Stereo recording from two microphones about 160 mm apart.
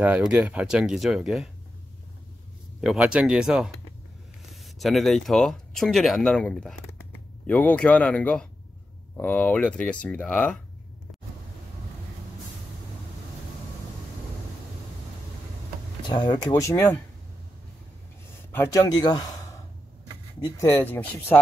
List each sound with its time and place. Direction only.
0.0 s speech: 10° right (ahead or behind)
2.8 s speech: 5° right (ahead or behind)
16.0 s speech: 25° left (ahead or behind)
18.5 s speech: 15° left (ahead or behind)
20.4 s speech: 15° left (ahead or behind)